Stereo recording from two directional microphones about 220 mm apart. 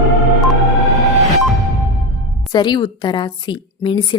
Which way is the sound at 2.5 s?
20° left (ahead or behind).